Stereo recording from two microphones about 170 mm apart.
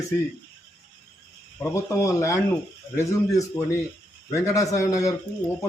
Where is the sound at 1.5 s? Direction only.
15° left (ahead or behind).